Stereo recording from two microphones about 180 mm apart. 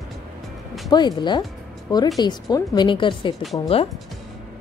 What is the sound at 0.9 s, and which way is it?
A woman's voice, 25° left (ahead or behind).